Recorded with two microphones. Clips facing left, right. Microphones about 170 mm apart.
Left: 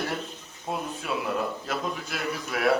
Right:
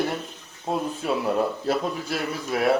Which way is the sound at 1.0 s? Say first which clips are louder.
Right 5 dB; 30° right (ahead or behind).